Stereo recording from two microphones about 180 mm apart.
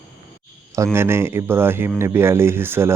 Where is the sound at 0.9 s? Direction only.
15° right (ahead or behind).